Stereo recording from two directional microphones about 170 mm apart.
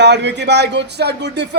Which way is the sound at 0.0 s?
90° right.